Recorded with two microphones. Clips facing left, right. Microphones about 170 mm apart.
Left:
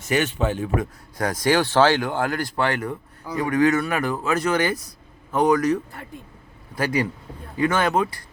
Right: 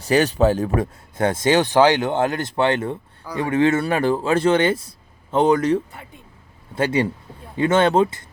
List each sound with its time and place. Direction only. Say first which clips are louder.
0.0 s speech: right 6 dB; 35° right (ahead or behind)
1.1 s speech: right 3 dB; 25° right (ahead or behind)